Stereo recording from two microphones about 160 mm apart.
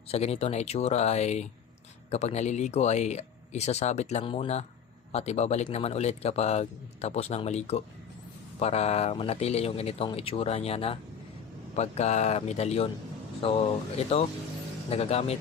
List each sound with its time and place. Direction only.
0.1 s speech: 40° left (ahead or behind)
14.8 s speech: 40° left (ahead or behind)